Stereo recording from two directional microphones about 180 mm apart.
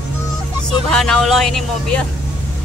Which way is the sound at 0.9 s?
5° left (ahead or behind).